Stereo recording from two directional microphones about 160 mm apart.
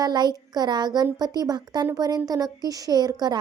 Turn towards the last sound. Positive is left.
turn(degrees=-25)  # may be behind; listen again after turning